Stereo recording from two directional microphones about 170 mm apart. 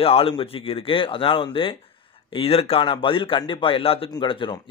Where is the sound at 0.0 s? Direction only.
35° left (ahead or behind).